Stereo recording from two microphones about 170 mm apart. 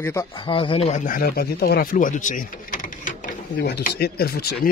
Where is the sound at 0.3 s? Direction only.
30° left (ahead or behind).